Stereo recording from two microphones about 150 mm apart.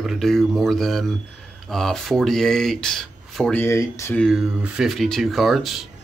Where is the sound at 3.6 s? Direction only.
15° left (ahead or behind).